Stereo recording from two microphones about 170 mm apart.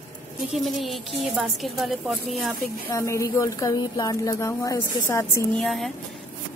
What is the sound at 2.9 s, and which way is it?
A woman's voice, 15° left (ahead or behind).